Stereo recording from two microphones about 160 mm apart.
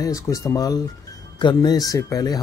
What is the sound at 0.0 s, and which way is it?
Speech, 20° left (ahead or behind).